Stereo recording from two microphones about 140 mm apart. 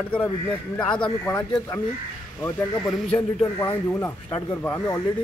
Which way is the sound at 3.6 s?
15° left (ahead or behind).